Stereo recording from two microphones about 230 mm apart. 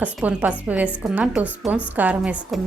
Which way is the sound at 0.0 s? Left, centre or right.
Centre.